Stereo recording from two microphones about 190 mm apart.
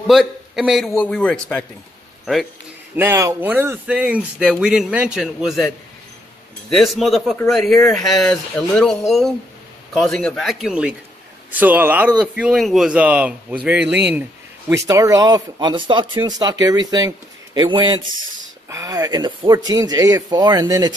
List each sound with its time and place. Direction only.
0.0 s a man's voice: centre (ahead or behind)
3.0 s speech: 15° right (ahead or behind)
6.7 s a man's voice: centre (ahead or behind); by 20.9 s 20° right (ahead or behind)